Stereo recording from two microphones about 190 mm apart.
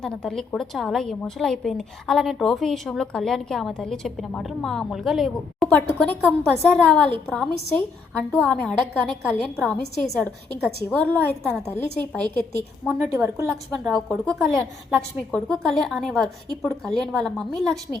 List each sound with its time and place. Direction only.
0.0 s a woman's voice: 5° left (ahead or behind)
13.1 s a woman's voice: 15° right (ahead or behind)
13.7 s a woman's voice: centre (ahead or behind)